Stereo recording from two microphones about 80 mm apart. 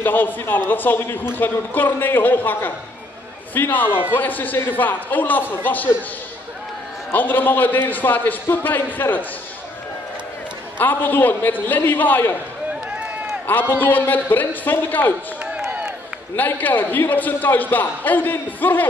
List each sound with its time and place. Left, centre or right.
0.0 s a man's voice: left
7.1 s a man's voice: left
10.8 s a man's voice: left
12.9 s run: centre
13.5 s a man's voice: left
15.4 s a sound: centre
16.3 s a man's voice: left